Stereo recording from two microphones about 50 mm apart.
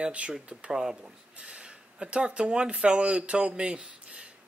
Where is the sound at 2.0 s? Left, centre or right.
Right.